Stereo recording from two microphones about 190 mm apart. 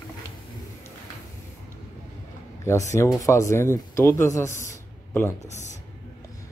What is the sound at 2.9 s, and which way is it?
Speech, 15° left (ahead or behind).